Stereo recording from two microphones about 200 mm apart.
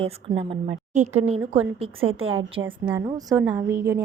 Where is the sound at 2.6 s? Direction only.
10° right (ahead or behind).